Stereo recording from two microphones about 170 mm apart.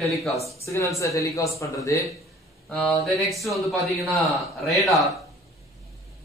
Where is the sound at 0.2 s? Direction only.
Centre (ahead or behind).